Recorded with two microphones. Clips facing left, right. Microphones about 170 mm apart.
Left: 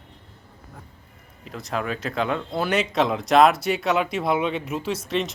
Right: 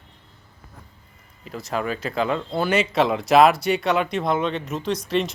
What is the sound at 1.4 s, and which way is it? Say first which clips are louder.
Speech: right 2 dB; centre (ahead or behind).